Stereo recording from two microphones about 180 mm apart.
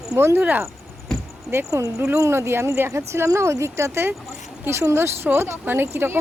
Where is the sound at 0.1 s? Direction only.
15° right (ahead or behind).